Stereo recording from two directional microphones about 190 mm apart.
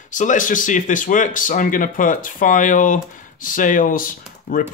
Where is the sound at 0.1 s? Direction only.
40° left (ahead or behind).